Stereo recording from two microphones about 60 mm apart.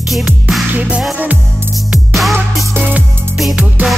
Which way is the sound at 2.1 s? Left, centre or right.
Centre.